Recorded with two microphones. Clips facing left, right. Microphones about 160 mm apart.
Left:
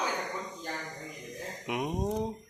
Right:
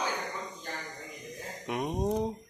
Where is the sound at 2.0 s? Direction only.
5° right (ahead or behind).